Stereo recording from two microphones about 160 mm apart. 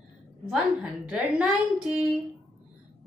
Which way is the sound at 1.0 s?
5° right (ahead or behind).